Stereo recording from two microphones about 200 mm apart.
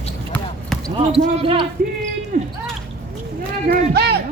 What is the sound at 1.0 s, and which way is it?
Speech, 25° right (ahead or behind).